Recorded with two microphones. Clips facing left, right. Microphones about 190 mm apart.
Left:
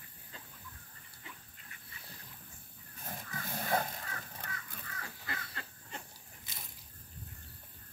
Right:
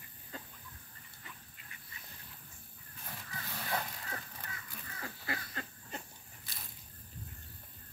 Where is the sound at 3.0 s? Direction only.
45° left (ahead or behind).